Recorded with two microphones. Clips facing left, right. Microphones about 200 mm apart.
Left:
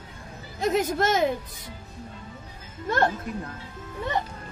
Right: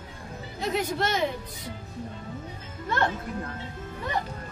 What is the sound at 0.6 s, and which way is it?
Speech, 45° left (ahead or behind).